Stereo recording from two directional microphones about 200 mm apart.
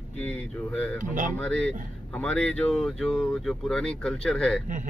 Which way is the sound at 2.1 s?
5° left (ahead or behind).